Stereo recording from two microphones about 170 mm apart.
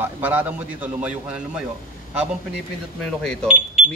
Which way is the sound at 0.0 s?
10° right (ahead or behind).